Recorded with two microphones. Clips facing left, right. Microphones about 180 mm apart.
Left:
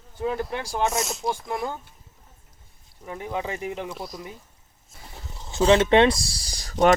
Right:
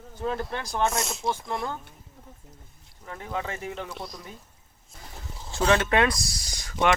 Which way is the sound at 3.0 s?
15° left (ahead or behind).